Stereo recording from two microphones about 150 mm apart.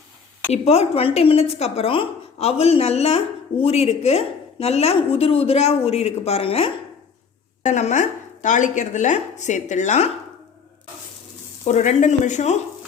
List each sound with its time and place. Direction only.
0.5 s a woman's voice: 45° left (ahead or behind)
11.6 s a woman's voice: 50° left (ahead or behind)